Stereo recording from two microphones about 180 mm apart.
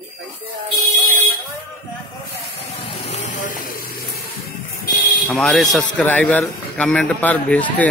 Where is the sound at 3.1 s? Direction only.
45° left (ahead or behind).